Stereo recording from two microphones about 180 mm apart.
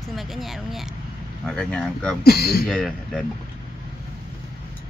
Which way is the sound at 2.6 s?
Centre (ahead or behind).